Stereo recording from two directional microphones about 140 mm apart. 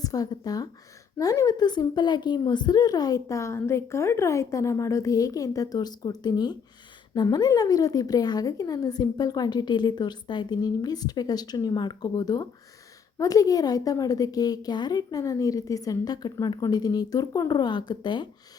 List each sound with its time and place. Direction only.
0.0 s a woman's voice: 25° left (ahead or behind)